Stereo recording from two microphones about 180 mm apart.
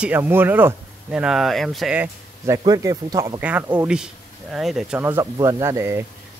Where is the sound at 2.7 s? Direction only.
20° right (ahead or behind).